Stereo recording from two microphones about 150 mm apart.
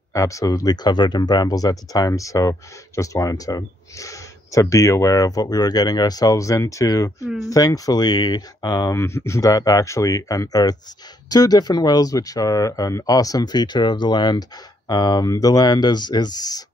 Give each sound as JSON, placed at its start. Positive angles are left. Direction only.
{"t": 0.1, "sound": "speech", "side_deg": 20}